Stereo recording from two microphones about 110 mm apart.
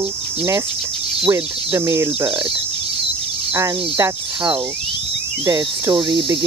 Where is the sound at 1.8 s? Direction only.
25° right (ahead or behind).